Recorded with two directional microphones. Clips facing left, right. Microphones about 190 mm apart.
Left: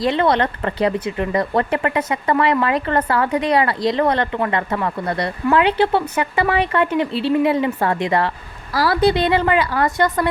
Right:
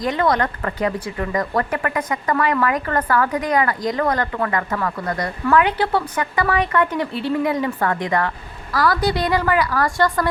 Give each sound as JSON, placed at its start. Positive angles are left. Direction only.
{"t": 0.0, "sound": "speech", "side_deg": 25}